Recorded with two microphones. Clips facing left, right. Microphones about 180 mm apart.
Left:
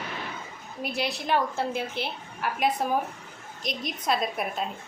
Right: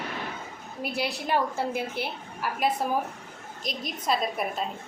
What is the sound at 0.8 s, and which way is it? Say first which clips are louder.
A woman's voice: even; 10° right (ahead or behind).